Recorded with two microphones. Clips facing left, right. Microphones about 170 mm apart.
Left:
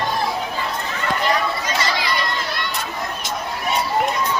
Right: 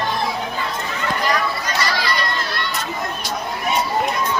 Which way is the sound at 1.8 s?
20° left (ahead or behind).